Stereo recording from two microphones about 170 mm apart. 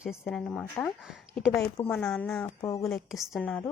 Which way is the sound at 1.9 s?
5° left (ahead or behind).